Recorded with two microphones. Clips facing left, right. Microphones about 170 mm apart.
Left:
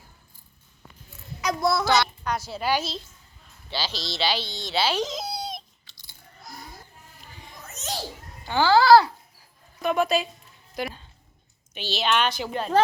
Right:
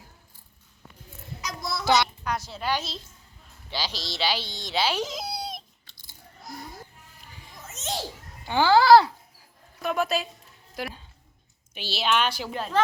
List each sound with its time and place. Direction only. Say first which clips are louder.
1.4 s a sound: left 10 dB; 60° left (ahead or behind)
2.2 s a woman's voice: left 2 dB; 5° left (ahead or behind)
3.7 s speech: left 2 dB; 15° right (ahead or behind)
7.7 s children playing: right 1 dB; 25° right (ahead or behind)
8.4 s a child's voice: even; 15° right (ahead or behind)
9.8 s a woman's voice: left 3 dB; centre (ahead or behind)
10.8 s a sound: left 3 dB; 5° right (ahead or behind)
11.7 s a woman's voice: left 1 dB; 10° right (ahead or behind)